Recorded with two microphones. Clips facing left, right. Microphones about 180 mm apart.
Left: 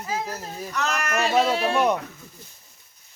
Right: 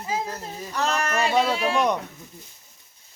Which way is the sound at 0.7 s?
30° right (ahead or behind).